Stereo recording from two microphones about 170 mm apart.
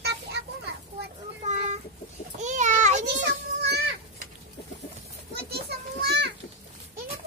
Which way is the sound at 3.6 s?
70° right (ahead or behind).